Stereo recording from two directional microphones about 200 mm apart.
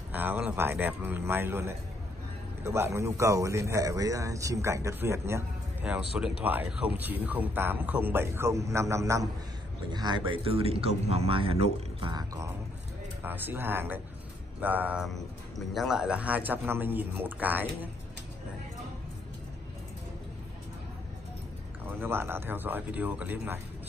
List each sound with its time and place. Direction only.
0.1 s speech: 10° right (ahead or behind)
22.0 s speech: 10° right (ahead or behind)